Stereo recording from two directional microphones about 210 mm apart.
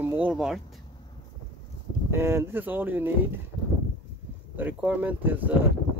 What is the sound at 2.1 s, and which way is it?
Speech, 10° right (ahead or behind).